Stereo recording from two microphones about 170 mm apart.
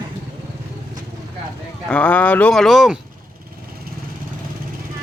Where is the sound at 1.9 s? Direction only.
10° left (ahead or behind).